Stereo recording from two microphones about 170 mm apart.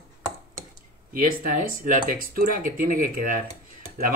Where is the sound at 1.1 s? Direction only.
55° right (ahead or behind).